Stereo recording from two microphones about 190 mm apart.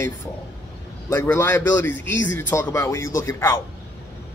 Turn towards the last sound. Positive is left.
turn(degrees=15)  # may be behind; listen again after turning